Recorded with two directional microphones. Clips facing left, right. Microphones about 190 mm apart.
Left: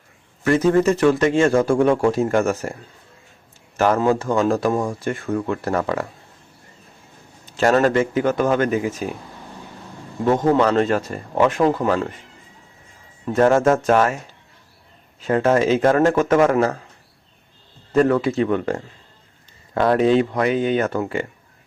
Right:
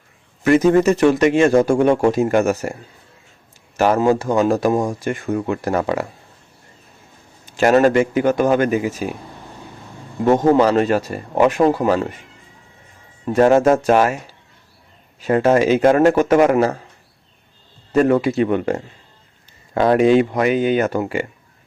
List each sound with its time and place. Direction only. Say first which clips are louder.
0.4 s a man's voice: right 3 dB; 15° right (ahead or behind)
2.2 s speech: right 3 dB; 10° right (ahead or behind)
3.8 s speech: right 2 dB; 10° right (ahead or behind)
7.6 s speech: right 3 dB; 10° right (ahead or behind)
10.2 s speech: right 3 dB; 15° right (ahead or behind)
13.2 s speech: right 3 dB; 15° right (ahead or behind)
17.9 s speech: right 2 dB; 10° right (ahead or behind)